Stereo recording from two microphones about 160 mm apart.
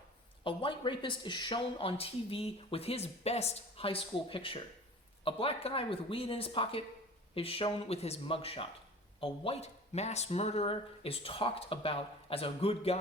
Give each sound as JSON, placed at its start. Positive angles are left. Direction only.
{"t": 0.4, "sound": "speech", "side_deg": 30}